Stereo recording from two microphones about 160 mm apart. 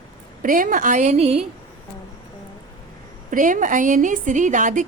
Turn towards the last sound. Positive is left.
turn(degrees=-55)  # may be behind; listen again after turning